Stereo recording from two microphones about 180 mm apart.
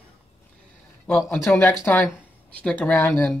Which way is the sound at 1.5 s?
5° left (ahead or behind).